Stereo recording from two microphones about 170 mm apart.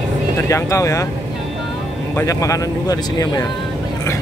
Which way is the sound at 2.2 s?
20° left (ahead or behind).